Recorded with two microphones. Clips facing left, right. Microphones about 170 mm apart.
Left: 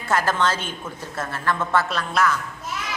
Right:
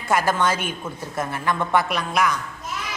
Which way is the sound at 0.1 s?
10° right (ahead or behind).